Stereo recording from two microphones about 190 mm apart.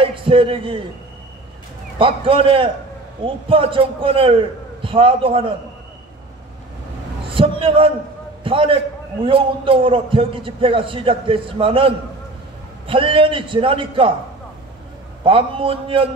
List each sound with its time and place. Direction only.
0.0 s a man's voice: 25° right (ahead or behind)
2.0 s a man's voice: 25° right (ahead or behind)
7.2 s a man's voice: 30° right (ahead or behind)
15.2 s a man's voice: 30° right (ahead or behind)